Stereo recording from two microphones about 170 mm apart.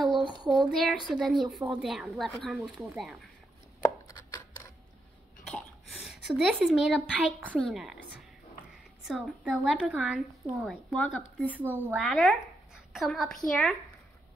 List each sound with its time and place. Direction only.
0.6 s a woman's voice: centre (ahead or behind)
3.8 s chopping: 20° left (ahead or behind)
5.4 s a sound: centre (ahead or behind)
7.5 s a woman's voice: centre (ahead or behind)
9.0 s a woman's voice: 5° right (ahead or behind)
11.4 s speech: 10° right (ahead or behind)
12.0 s a woman's voice: 5° left (ahead or behind)